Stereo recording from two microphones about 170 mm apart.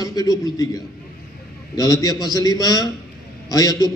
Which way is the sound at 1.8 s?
20° left (ahead or behind).